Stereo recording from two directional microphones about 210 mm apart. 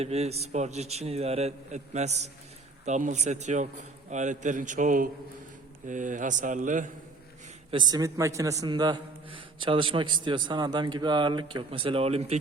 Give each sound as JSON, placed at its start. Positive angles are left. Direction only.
{"t": 0.0, "sound": "a man's voice", "side_deg": -30}
{"t": 7.7, "sound": "a man's voice", "side_deg": -20}